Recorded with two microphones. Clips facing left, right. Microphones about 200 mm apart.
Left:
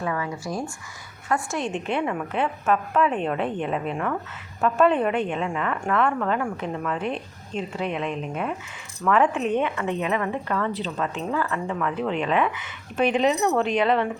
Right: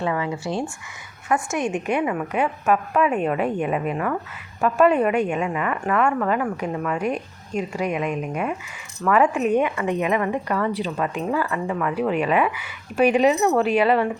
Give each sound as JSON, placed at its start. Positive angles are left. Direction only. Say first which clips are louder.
{"t": 0.0, "sound": "a woman's voice", "louder": "right 4 dB", "side_deg": -25}